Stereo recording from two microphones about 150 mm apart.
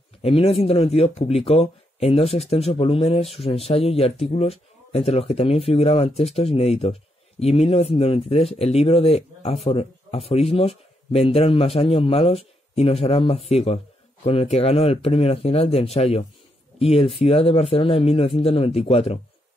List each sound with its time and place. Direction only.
0.2 s speech: 40° left (ahead or behind)